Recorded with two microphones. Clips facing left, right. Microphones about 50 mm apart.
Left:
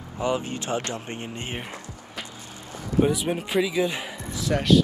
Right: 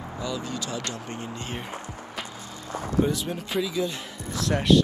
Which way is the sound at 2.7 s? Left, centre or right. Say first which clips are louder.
Right 3 dB; right.